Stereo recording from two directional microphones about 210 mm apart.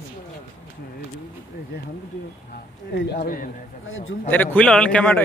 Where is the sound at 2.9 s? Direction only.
55° left (ahead or behind).